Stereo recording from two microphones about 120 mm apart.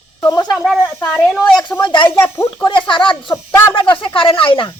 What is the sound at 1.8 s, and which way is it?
Speech, 40° left (ahead or behind).